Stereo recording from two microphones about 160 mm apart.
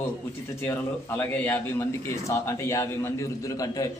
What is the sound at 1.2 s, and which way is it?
A man's voice, 10° left (ahead or behind).